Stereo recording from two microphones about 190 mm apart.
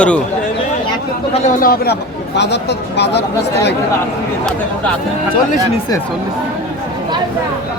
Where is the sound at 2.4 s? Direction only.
65° left (ahead or behind).